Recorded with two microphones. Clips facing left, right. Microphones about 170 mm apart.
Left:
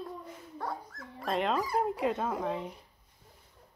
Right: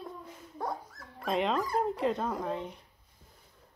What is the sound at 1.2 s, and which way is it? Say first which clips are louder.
Speech: right 1 dB; centre (ahead or behind).